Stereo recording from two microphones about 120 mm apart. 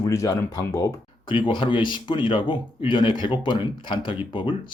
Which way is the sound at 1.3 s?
45° left (ahead or behind).